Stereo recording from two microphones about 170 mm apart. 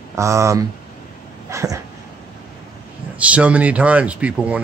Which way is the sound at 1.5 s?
15° right (ahead or behind).